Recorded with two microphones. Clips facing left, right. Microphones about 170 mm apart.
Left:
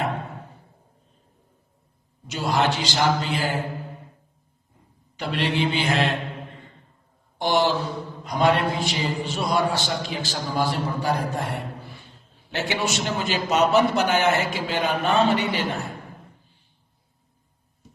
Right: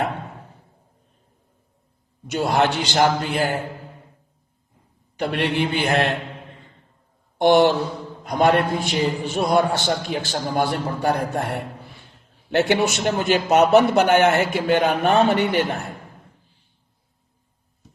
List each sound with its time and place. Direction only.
2.2 s a man's voice: 55° right (ahead or behind)
5.1 s a man's voice: 55° right (ahead or behind)
7.3 s a man's voice: 60° right (ahead or behind)